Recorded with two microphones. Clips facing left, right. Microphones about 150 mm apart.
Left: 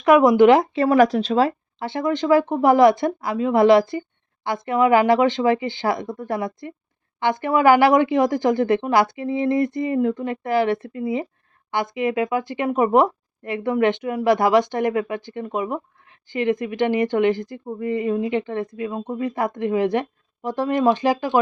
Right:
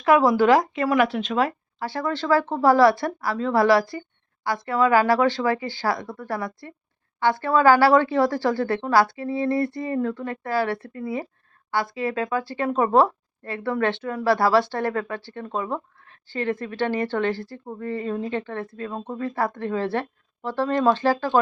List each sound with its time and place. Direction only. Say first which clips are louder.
0.0 s a woman's voice: left 5 dB; 20° left (ahead or behind)